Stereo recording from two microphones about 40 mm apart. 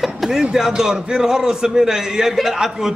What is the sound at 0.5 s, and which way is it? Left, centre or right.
A man's voice, centre.